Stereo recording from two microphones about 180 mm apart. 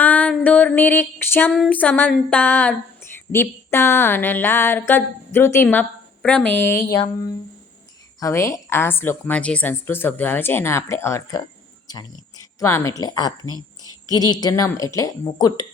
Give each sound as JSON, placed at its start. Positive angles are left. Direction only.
{"t": 0.0, "sound": "a sound", "side_deg": 10}
{"t": 3.3, "sound": "a woman's voice", "side_deg": 15}
{"t": 8.2, "sound": "a woman's voice", "side_deg": 15}